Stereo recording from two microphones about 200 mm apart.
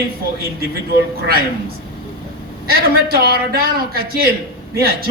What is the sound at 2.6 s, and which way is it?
A man's voice, 50° right (ahead or behind).